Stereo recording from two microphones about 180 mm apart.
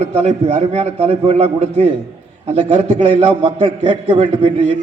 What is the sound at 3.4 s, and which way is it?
Speech, 30° right (ahead or behind).